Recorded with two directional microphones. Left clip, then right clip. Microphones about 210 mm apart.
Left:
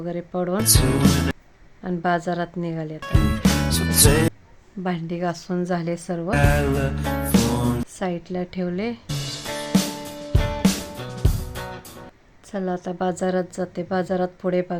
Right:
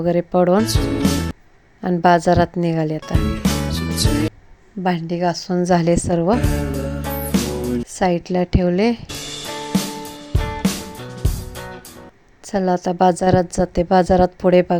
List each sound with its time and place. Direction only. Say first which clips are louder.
0.0 s a woman's voice: right 11 dB; 30° right (ahead or behind)
0.6 s speech: even; centre (ahead or behind)
1.8 s a woman's voice: right 9 dB; 30° right (ahead or behind)
3.0 s music: right 1 dB; centre (ahead or behind)
4.8 s a woman's voice: right 7 dB; 20° right (ahead or behind)
7.0 s music: right 1 dB; centre (ahead or behind)
7.9 s a woman's voice: right 9 dB; 25° right (ahead or behind)
9.5 s music: even; centre (ahead or behind)
12.5 s a woman's voice: right 8 dB; 25° right (ahead or behind)